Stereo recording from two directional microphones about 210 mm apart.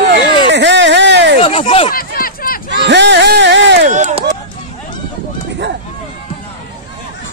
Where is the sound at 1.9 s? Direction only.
45° left (ahead or behind).